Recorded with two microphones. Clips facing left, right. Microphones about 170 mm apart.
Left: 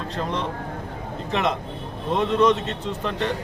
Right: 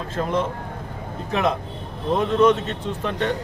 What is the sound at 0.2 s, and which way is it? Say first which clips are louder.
Speech: right 5 dB; 5° right (ahead or behind).